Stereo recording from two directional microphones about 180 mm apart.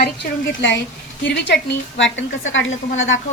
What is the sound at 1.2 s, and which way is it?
A woman's voice, 85° left.